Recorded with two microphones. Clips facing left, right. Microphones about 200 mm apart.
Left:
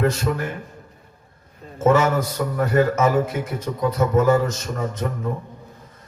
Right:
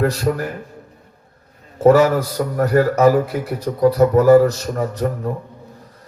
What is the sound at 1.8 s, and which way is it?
A man's voice, 35° right (ahead or behind).